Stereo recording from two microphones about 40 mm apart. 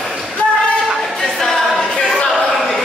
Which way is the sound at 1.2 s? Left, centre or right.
Centre.